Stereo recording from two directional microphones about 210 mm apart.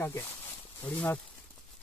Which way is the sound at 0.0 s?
10° left (ahead or behind).